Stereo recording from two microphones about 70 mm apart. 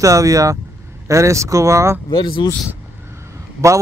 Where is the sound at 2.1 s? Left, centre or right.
Left.